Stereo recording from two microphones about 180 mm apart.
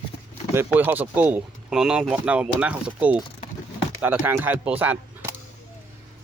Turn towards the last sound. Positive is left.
turn(degrees=-10)  # may be behind; listen again after turning